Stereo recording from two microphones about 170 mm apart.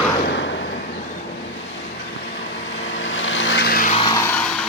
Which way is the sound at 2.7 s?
90° left.